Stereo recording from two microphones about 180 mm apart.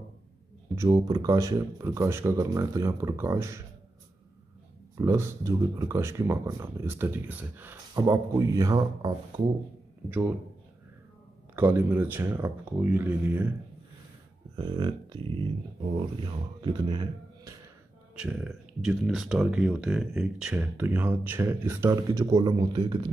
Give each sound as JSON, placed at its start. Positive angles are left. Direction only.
{"t": 0.7, "sound": "speech", "side_deg": -20}
{"t": 4.9, "sound": "speech", "side_deg": -15}
{"t": 10.0, "sound": "speech", "side_deg": -10}
{"t": 11.5, "sound": "speech", "side_deg": -10}
{"t": 14.5, "sound": "speech", "side_deg": -25}
{"t": 16.6, "sound": "speech", "side_deg": -25}
{"t": 18.1, "sound": "speech", "side_deg": -5}